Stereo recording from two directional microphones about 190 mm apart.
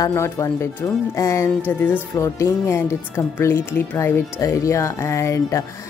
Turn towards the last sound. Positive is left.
turn(degrees=15)  # may be behind; listen again after turning